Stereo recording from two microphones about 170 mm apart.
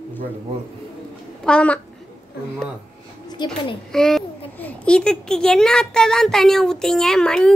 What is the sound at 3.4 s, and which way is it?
Speech, 25° left (ahead or behind).